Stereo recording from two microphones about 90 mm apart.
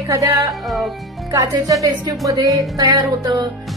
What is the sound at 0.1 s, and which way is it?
A woman's voice, 40° right (ahead or behind).